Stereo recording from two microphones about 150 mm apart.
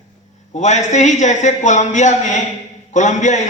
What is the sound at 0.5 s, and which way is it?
A man's voice, 50° left (ahead or behind).